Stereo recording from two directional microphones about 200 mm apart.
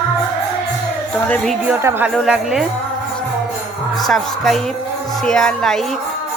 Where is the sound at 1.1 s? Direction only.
5° left (ahead or behind).